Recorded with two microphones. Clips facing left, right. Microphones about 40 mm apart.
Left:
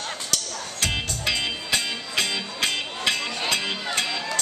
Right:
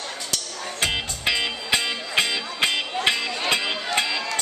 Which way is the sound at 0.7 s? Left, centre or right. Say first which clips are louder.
Right 2 dB; centre.